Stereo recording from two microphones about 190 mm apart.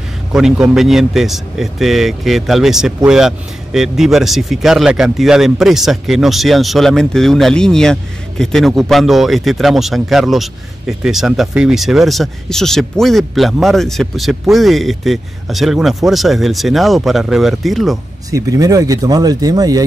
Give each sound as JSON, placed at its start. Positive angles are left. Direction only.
{"t": 0.3, "sound": "a man's voice", "side_deg": 0}
{"t": 18.3, "sound": "speech", "side_deg": -20}